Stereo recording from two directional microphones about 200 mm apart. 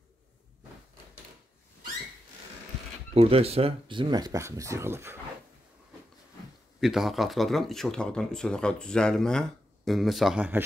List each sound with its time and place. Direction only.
3.2 s speech: 30° right (ahead or behind); by 5.1 s 10° right (ahead or behind)
6.8 s speech: centre (ahead or behind)